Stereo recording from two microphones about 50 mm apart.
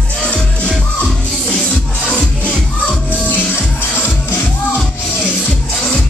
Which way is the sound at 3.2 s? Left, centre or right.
Left.